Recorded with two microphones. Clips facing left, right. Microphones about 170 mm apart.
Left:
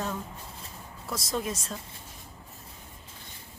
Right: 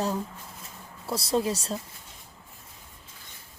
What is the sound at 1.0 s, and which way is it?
Speech, 30° right (ahead or behind).